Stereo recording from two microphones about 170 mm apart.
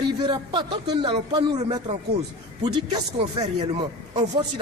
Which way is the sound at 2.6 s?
25° right (ahead or behind).